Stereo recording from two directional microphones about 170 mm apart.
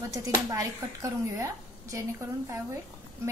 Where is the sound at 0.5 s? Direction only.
20° right (ahead or behind).